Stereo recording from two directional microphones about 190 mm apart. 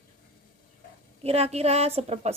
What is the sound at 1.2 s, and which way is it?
Speech, 30° right (ahead or behind).